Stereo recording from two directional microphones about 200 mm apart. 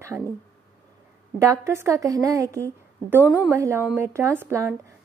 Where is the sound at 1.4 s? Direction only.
15° right (ahead or behind).